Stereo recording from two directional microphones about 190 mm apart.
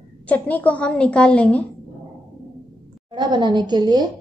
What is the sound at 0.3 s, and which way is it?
A woman's voice, 10° left (ahead or behind).